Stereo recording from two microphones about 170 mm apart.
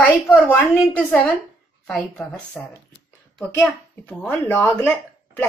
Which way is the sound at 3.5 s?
10° left (ahead or behind).